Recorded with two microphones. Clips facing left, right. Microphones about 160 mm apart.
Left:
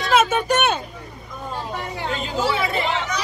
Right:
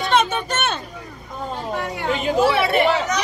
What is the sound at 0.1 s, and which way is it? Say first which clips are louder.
Vehicle: left 3 dB; 5° left (ahead or behind).